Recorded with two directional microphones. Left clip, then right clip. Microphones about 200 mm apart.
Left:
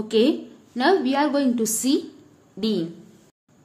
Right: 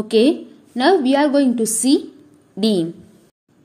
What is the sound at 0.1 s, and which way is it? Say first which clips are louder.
A woman's voice: right 5 dB; 25° right (ahead or behind).